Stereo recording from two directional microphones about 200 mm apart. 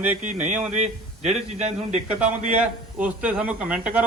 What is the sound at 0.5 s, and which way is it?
Speech, 5° right (ahead or behind).